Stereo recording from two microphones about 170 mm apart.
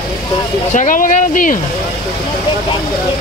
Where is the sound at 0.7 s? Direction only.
50° left (ahead or behind).